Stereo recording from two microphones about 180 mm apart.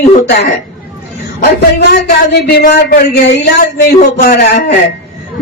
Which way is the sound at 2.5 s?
55° left (ahead or behind).